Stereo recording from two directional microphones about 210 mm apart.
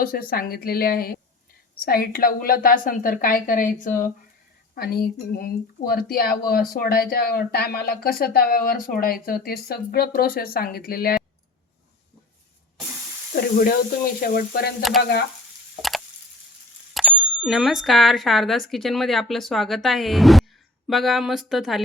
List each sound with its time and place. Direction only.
0.0 s speech: 45° left (ahead or behind)
13.3 s speech: 45° left (ahead or behind)
14.8 s speech: centre (ahead or behind)
15.8 s a sound: centre (ahead or behind)
16.9 s speech: centre (ahead or behind)